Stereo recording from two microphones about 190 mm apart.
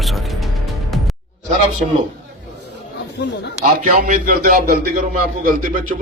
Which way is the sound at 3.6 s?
45° right (ahead or behind).